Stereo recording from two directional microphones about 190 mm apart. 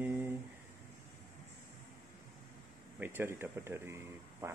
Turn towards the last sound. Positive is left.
turn(degrees=-15)  # may be behind; listen again after turning